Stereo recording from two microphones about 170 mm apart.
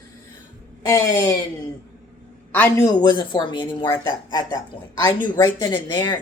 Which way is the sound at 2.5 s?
10° left (ahead or behind).